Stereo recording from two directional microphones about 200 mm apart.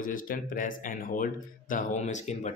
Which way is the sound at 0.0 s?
45° left (ahead or behind).